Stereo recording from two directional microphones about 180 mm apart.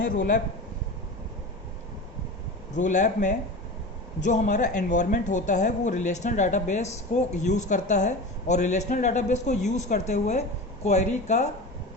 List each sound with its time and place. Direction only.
0.0 s speech: 45° left (ahead or behind)
2.7 s speech: 45° left (ahead or behind)